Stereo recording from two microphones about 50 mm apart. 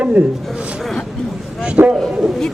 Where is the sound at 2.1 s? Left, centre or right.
Centre.